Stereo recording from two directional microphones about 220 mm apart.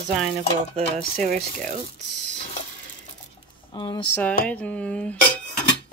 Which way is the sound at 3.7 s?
20° left (ahead or behind).